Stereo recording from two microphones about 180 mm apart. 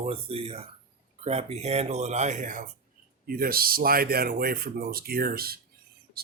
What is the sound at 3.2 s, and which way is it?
Speech, 55° right (ahead or behind).